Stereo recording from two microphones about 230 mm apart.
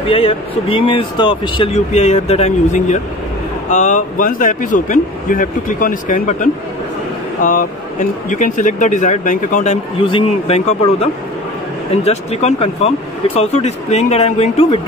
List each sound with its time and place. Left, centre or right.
0.1 s speech: left